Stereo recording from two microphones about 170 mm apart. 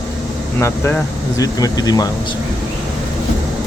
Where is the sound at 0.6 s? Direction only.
15° left (ahead or behind).